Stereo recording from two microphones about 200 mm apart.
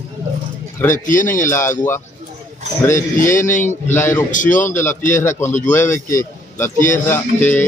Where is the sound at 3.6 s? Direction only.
10° left (ahead or behind).